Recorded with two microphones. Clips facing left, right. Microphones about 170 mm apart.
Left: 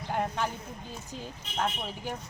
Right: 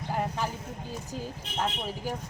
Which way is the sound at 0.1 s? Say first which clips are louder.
Even; 5° right (ahead or behind).